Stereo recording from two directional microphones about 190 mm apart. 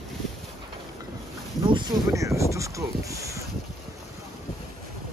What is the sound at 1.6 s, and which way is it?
Boat, 25° right (ahead or behind).